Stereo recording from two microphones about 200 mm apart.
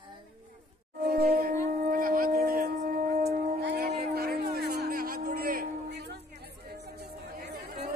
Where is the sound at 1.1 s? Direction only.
50° right (ahead or behind).